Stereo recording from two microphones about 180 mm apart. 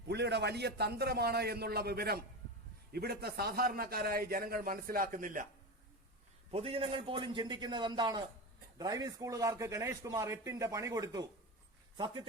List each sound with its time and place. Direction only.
0.1 s a man's voice: 70° right (ahead or behind); by 5.5 s 45° right (ahead or behind)
6.5 s a man's voice: 35° right (ahead or behind)